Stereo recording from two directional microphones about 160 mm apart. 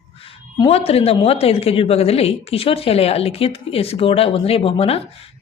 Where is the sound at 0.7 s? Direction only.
40° left (ahead or behind).